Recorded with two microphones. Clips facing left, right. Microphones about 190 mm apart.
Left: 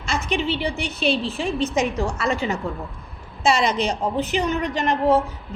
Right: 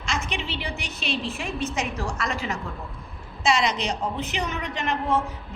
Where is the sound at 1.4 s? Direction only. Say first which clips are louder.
Left 7 dB; 30° left (ahead or behind).